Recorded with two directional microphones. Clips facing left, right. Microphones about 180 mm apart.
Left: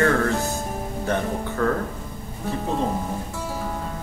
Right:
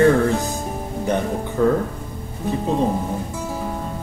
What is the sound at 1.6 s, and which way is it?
Speech, 20° right (ahead or behind).